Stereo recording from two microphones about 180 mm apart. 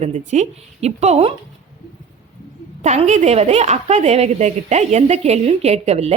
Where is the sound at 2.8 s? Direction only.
40° right (ahead or behind).